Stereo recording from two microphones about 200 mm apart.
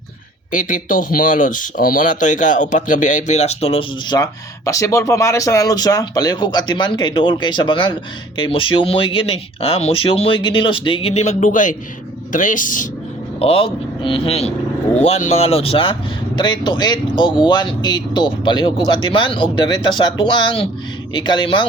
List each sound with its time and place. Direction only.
0.5 s speech: 40° left (ahead or behind)
13.4 s speech: 30° left (ahead or behind)